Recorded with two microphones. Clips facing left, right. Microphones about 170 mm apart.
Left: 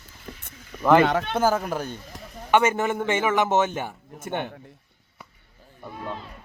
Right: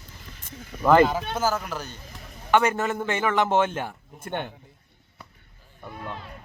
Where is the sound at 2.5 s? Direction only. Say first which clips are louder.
Left 1 dB; 10° left (ahead or behind).